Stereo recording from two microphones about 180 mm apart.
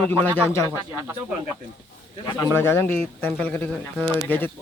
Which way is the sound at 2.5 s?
10° left (ahead or behind).